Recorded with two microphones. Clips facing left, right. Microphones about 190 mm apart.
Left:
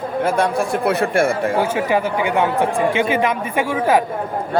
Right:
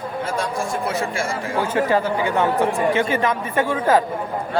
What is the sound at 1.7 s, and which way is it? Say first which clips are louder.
Speech: even; 15° left (ahead or behind).